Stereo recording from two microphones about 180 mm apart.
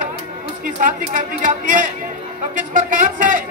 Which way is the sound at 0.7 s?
45° right (ahead or behind).